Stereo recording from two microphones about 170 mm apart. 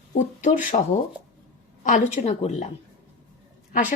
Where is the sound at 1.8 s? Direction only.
45° left (ahead or behind).